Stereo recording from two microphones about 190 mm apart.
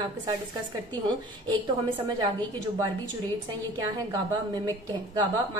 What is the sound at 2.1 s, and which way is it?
Speech, 20° right (ahead or behind).